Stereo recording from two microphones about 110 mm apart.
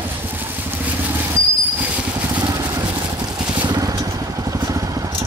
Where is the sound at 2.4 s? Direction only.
35° right (ahead or behind).